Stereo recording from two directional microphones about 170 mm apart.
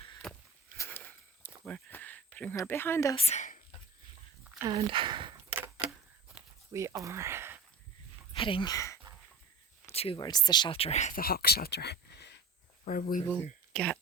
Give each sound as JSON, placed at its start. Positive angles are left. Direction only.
{"t": 0.8, "sound": "walk", "side_deg": 10}
{"t": 3.2, "sound": "speech", "side_deg": 40}
{"t": 4.7, "sound": "speech", "side_deg": -30}
{"t": 5.5, "sound": "camera", "side_deg": -10}
{"t": 6.4, "sound": "a sound", "side_deg": -5}
{"t": 6.7, "sound": "speech", "side_deg": -15}
{"t": 8.3, "sound": "speech", "side_deg": 30}
{"t": 9.9, "sound": "a sound", "side_deg": 35}
{"t": 10.2, "sound": "speech", "side_deg": 25}
{"t": 11.2, "sound": "speech", "side_deg": 65}
{"t": 12.8, "sound": "speech", "side_deg": 60}
{"t": 13.7, "sound": "speech", "side_deg": 5}